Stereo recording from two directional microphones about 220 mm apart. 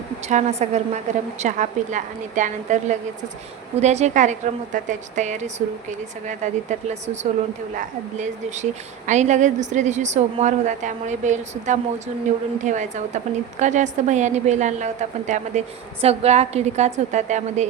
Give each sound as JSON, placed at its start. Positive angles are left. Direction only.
{"t": 0.3, "sound": "a woman's voice", "side_deg": -30}